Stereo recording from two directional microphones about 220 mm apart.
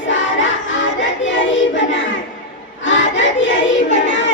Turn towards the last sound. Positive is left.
turn(degrees=55)  # may be behind; listen again after turning